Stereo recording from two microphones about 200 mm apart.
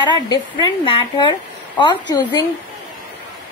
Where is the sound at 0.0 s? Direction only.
20° left (ahead or behind).